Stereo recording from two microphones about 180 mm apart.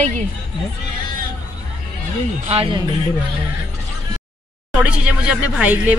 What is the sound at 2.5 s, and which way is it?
Speech, 30° right (ahead or behind).